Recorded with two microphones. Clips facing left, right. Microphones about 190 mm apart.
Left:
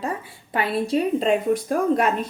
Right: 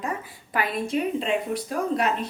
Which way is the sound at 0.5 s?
30° left (ahead or behind).